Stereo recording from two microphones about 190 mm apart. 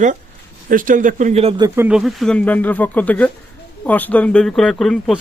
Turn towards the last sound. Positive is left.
turn(degrees=0)  # may be behind; listen again after turning